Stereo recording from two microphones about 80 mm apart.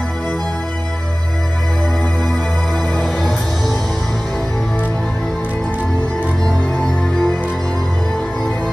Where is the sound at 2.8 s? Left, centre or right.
Centre.